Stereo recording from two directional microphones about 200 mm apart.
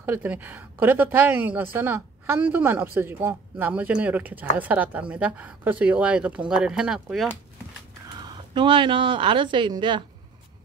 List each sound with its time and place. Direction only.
0.0 s speech: 10° right (ahead or behind)
8.2 s speech: 25° right (ahead or behind)